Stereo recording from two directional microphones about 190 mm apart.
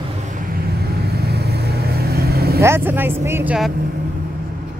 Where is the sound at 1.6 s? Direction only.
55° right (ahead or behind).